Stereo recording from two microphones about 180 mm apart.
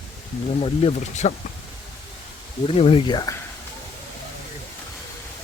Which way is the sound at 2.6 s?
30° left (ahead or behind).